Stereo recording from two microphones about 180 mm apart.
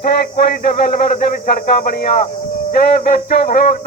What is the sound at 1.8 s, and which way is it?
Speech, 55° left (ahead or behind).